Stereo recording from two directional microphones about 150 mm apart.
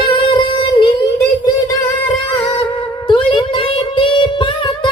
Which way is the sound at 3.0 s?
35° left (ahead or behind).